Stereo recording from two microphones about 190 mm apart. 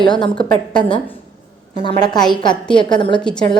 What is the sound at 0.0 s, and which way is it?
Speech, 25° left (ahead or behind).